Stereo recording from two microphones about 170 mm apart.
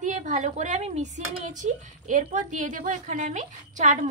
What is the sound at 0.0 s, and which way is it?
Speech, 45° right (ahead or behind).